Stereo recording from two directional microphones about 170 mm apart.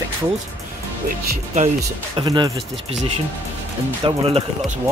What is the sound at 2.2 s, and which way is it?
Speech, 25° right (ahead or behind).